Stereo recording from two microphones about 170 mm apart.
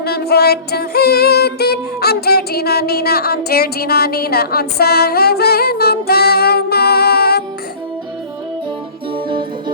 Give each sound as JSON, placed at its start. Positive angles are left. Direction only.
{"t": 0.0, "sound": "music", "side_deg": 70}
{"t": 9.1, "sound": "music", "side_deg": -30}